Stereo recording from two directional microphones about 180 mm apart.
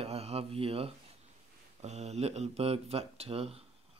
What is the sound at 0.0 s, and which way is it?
Speech, 35° right (ahead or behind).